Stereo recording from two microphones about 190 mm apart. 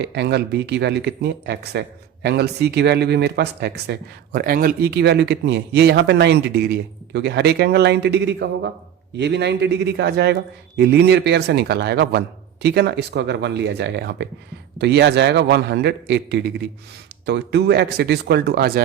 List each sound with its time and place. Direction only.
0.0 s speech: 60° right (ahead or behind)